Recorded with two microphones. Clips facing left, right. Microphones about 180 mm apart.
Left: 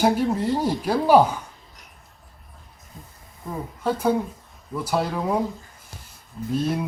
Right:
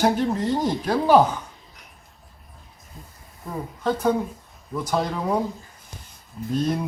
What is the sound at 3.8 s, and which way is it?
Speech, 10° left (ahead or behind).